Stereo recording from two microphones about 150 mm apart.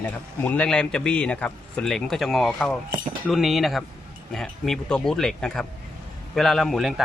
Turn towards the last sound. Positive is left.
turn(degrees=0)  # may be behind; listen again after turning